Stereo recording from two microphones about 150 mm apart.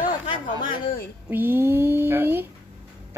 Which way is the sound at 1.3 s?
15° right (ahead or behind).